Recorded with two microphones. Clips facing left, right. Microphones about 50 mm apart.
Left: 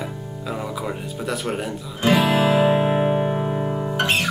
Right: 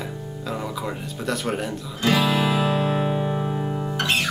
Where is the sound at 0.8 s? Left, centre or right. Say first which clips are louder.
Left 1 dB; centre.